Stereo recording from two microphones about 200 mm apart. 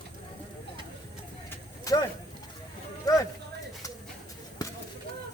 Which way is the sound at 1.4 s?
15° left (ahead or behind).